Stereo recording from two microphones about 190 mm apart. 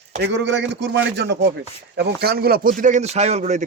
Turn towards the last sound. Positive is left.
turn(degrees=-35)  # may be behind; listen again after turning